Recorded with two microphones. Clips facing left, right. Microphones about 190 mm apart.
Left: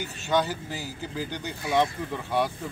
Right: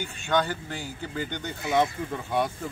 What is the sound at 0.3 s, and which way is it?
Speech, 5° left (ahead or behind).